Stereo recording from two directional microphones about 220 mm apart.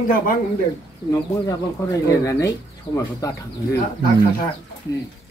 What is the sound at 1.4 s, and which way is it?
Speech, 15° left (ahead or behind).